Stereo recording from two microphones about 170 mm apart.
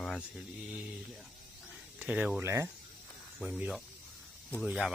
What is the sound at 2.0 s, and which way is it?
Speech, 5° right (ahead or behind).